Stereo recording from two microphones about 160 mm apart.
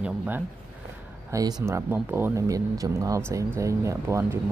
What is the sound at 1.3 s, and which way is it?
Speech, 20° right (ahead or behind).